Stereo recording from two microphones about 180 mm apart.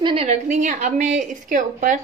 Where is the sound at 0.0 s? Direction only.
30° right (ahead or behind).